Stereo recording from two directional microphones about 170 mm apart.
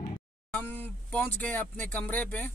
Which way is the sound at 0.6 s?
10° left (ahead or behind).